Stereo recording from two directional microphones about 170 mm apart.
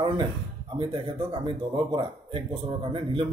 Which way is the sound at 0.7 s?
15° right (ahead or behind).